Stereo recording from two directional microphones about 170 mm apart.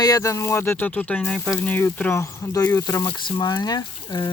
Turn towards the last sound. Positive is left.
turn(degrees=25)  # may be behind; listen again after turning